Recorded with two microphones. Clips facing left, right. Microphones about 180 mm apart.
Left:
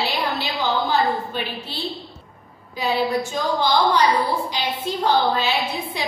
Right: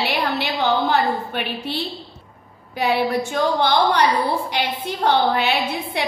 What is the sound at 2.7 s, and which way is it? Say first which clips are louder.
A woman's voice: right 2 dB; 60° right (ahead or behind).